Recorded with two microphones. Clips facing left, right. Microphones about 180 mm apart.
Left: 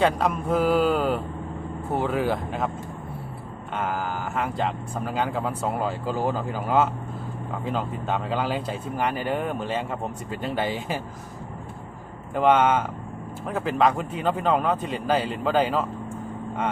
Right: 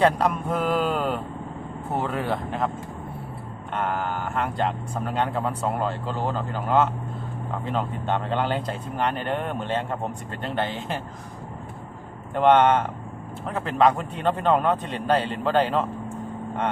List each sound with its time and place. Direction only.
0.0 s speech: centre (ahead or behind)
3.8 s speech: 5° left (ahead or behind)
12.3 s speech: 5° left (ahead or behind)